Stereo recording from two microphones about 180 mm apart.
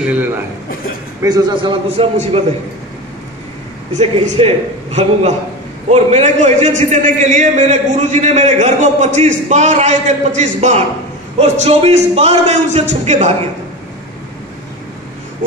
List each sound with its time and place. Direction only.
0.0 s a man's voice: 10° right (ahead or behind)
1.2 s a man's voice: 20° right (ahead or behind)
3.9 s a man's voice: 35° right (ahead or behind)